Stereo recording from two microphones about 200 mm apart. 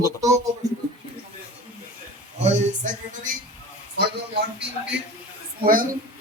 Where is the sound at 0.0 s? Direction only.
15° right (ahead or behind).